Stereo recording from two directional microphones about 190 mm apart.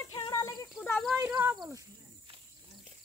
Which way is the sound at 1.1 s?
10° right (ahead or behind).